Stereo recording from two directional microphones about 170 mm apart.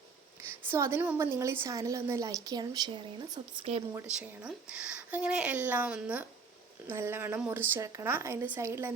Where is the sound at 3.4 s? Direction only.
35° right (ahead or behind).